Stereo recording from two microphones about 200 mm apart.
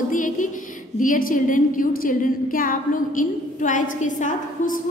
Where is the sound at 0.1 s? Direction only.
40° left (ahead or behind).